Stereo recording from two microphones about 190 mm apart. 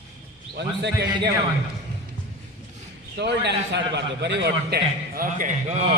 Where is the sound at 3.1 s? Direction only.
65° right (ahead or behind); by 5.8 s 45° right (ahead or behind).